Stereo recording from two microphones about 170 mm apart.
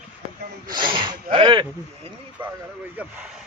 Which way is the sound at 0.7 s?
30° right (ahead or behind).